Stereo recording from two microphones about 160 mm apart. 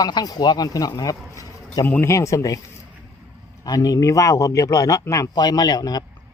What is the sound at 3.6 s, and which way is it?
A man's voice, 25° left (ahead or behind).